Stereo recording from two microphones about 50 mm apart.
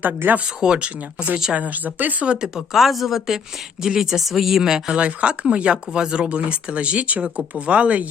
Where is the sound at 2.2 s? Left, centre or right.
Right.